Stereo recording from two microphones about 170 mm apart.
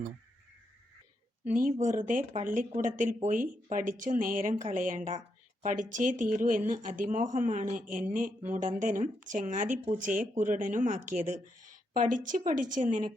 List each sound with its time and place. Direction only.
1.5 s speech: 50° right (ahead or behind)